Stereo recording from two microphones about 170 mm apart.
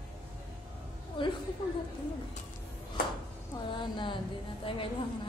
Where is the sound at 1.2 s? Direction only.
30° left (ahead or behind).